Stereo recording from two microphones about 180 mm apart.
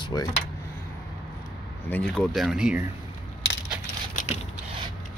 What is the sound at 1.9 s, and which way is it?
Speech, 5° left (ahead or behind).